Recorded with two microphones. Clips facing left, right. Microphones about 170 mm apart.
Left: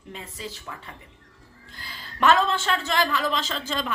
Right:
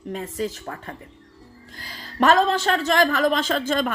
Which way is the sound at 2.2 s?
40° right (ahead or behind).